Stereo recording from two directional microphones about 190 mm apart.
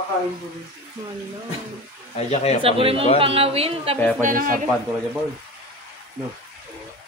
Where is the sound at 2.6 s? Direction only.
30° right (ahead or behind).